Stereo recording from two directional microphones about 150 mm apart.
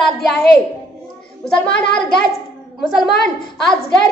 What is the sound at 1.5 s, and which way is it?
A child's voice, 5° left (ahead or behind).